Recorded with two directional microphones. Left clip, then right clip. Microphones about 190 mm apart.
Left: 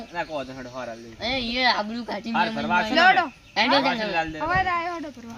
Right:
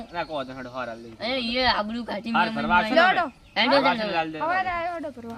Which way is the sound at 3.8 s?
Centre (ahead or behind).